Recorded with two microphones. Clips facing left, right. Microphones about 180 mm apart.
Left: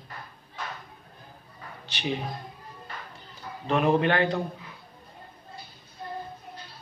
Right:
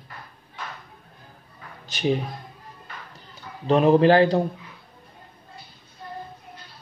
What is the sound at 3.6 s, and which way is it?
Speech, 35° right (ahead or behind).